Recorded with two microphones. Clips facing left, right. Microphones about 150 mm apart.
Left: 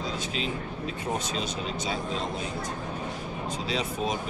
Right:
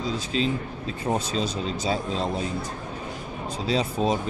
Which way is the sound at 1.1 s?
35° right (ahead or behind).